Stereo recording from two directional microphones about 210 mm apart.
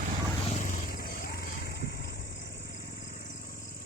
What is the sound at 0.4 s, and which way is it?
Vehicle, 35° left (ahead or behind).